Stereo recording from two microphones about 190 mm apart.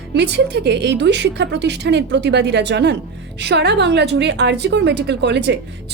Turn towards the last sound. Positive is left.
turn(degrees=-65)  # may be behind; listen again after turning